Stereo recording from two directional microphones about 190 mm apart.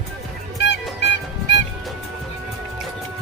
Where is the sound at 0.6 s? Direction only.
65° left (ahead or behind).